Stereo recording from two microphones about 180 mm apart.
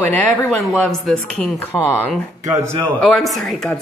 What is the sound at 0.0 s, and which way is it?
A woman's voice, 10° left (ahead or behind).